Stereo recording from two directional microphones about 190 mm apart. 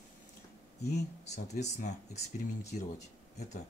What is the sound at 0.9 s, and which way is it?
Speech, 35° left (ahead or behind).